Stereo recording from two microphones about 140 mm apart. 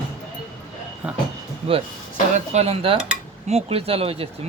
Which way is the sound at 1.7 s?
40° right (ahead or behind).